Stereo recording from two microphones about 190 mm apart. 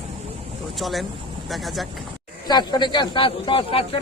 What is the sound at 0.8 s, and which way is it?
Speech, centre (ahead or behind).